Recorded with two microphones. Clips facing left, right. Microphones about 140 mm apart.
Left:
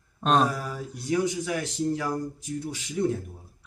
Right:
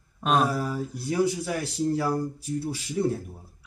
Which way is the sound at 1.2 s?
35° right (ahead or behind).